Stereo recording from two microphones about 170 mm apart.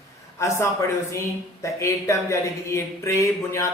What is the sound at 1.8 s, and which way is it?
Speech, 15° left (ahead or behind).